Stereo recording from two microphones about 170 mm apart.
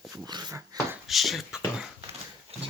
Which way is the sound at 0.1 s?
25° right (ahead or behind).